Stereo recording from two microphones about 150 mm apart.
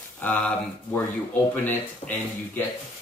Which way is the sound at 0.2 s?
15° left (ahead or behind).